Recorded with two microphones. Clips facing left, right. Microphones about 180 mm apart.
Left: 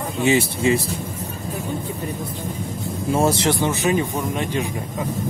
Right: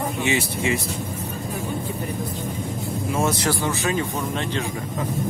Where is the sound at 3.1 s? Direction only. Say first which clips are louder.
Left 5 dB; 30° left (ahead or behind); by 4.7 s 15° left (ahead or behind).